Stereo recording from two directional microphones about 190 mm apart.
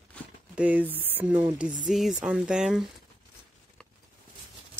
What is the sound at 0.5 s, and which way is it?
Speech, 10° right (ahead or behind).